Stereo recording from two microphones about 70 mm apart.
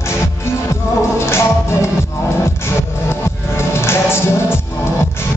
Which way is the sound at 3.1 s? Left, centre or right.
Left.